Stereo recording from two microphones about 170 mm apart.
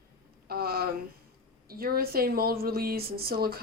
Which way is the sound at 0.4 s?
65° right (ahead or behind).